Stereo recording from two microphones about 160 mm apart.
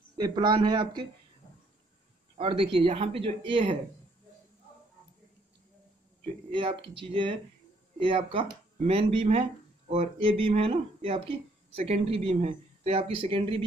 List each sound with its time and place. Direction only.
0.2 s a man's voice: 30° right (ahead or behind)
2.3 s speech: 35° right (ahead or behind)
6.5 s speech: 30° right (ahead or behind)